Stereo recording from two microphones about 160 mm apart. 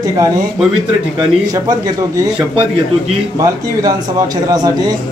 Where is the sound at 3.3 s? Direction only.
20° right (ahead or behind).